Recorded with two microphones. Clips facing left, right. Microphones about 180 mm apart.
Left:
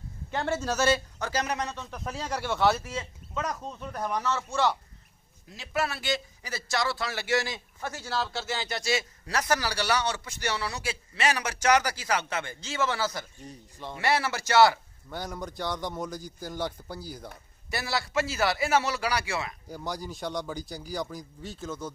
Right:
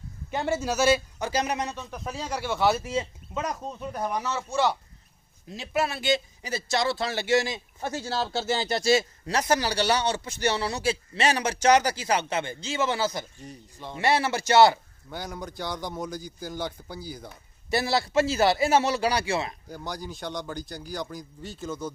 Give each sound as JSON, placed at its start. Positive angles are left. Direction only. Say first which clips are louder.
{"t": 0.3, "sound": "a man's voice", "louder": "right 2 dB", "side_deg": -10}
{"t": 2.8, "sound": "a man's voice", "louder": "right 7 dB", "side_deg": -20}
{"t": 13.4, "sound": "a man's voice", "louder": "right 1 dB", "side_deg": 0}
{"t": 13.9, "sound": "speech", "louder": "right 3 dB", "side_deg": -25}
{"t": 15.0, "sound": "a man's voice", "louder": "even", "side_deg": 0}
{"t": 17.6, "sound": "speech", "louder": "right 6 dB", "side_deg": -25}
{"t": 19.7, "sound": "a man's voice", "louder": "even", "side_deg": 5}